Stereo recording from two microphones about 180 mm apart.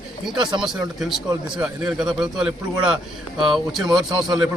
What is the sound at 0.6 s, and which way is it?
A man's voice, centre (ahead or behind).